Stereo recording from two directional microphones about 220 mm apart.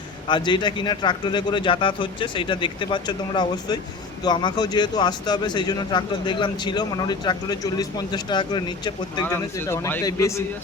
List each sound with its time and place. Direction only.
0.3 s a man's voice: 20° left (ahead or behind)